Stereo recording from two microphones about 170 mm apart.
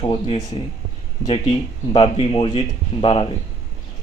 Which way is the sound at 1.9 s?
30° left (ahead or behind).